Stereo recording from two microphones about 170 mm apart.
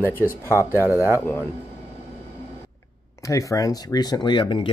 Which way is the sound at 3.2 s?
20° left (ahead or behind).